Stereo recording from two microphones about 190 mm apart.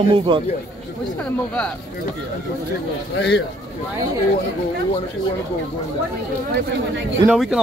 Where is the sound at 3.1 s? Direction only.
70° left (ahead or behind).